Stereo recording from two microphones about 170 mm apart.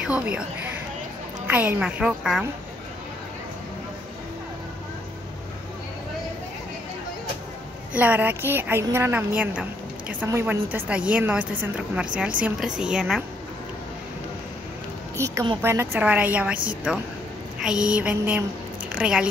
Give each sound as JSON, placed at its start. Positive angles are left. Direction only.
{"t": 0.0, "sound": "a woman's voice", "side_deg": -5}
{"t": 1.5, "sound": "a woman's voice", "side_deg": -10}
{"t": 7.9, "sound": "a woman's voice", "side_deg": -10}
{"t": 15.1, "sound": "a woman's voice", "side_deg": -15}